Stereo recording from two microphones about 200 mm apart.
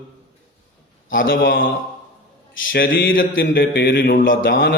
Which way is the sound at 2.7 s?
45° left (ahead or behind).